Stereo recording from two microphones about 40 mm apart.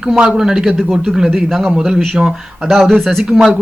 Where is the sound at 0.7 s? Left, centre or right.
Centre.